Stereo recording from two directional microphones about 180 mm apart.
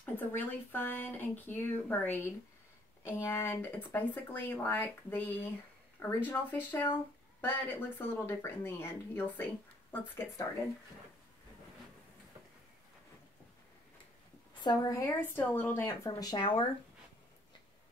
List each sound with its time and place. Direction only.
0.0 s speech: 10° left (ahead or behind)
14.5 s a woman's voice: 25° left (ahead or behind)